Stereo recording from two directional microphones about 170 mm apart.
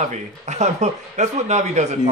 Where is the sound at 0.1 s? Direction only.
45° right (ahead or behind).